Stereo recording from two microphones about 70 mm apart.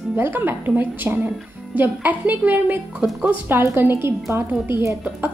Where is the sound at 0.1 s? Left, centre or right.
Right.